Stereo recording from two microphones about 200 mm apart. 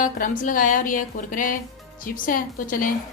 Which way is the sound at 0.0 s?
40° left (ahead or behind).